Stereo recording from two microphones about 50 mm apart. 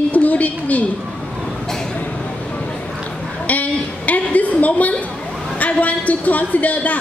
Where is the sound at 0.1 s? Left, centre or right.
Left.